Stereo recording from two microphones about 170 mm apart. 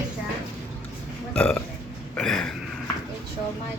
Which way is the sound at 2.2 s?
5° left (ahead or behind).